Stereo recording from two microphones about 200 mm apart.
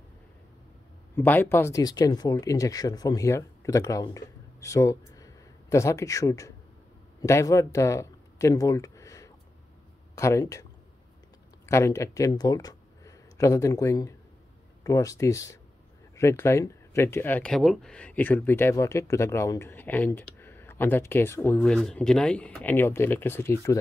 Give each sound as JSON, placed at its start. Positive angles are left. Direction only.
{"t": 1.1, "sound": "speech", "side_deg": 10}